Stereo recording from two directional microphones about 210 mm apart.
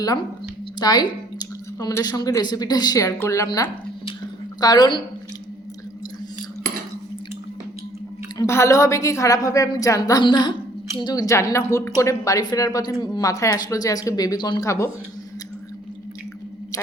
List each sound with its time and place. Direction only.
0.8 s a woman's voice: 20° left (ahead or behind)
8.4 s a woman's voice: 15° left (ahead or behind)